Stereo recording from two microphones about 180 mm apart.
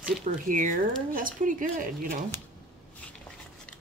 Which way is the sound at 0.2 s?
45° right (ahead or behind).